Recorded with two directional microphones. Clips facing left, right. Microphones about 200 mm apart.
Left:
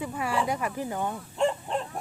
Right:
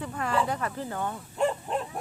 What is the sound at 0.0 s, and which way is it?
Speech, 10° left (ahead or behind).